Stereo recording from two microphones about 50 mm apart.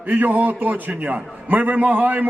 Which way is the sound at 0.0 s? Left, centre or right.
Right.